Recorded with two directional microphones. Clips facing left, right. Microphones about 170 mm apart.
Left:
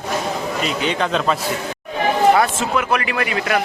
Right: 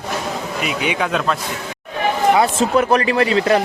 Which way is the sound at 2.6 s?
35° right (ahead or behind).